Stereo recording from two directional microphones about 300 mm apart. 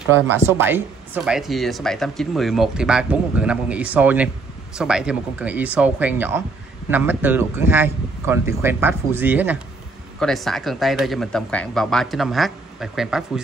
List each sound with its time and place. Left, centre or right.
0.1 s speech: centre